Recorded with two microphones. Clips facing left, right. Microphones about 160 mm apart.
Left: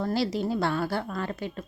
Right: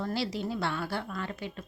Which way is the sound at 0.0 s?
40° left (ahead or behind).